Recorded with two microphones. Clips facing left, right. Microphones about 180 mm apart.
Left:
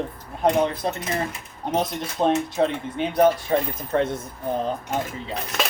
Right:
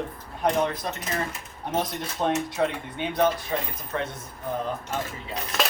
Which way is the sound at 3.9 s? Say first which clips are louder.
Left 8 dB; 50° left (ahead or behind).